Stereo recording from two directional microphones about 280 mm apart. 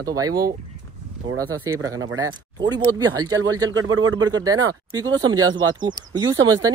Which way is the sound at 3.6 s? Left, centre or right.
Right.